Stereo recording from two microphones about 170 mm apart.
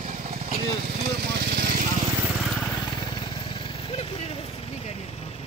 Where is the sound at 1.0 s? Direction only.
65° right (ahead or behind).